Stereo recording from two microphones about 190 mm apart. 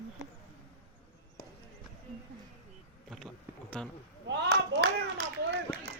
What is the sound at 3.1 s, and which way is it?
Bee, centre (ahead or behind).